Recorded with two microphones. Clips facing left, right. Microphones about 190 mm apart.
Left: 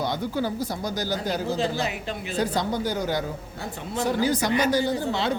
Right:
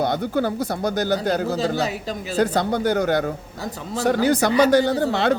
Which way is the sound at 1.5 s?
40° right (ahead or behind).